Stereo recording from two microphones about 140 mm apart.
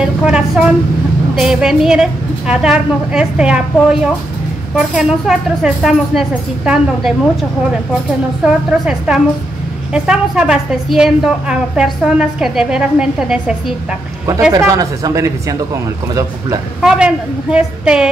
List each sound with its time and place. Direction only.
0.0 s a woman's voice: 5° right (ahead or behind)
8.8 s a woman's voice: 5° right (ahead or behind)
14.5 s speech: 25° right (ahead or behind)
16.8 s a woman's voice: 5° right (ahead or behind)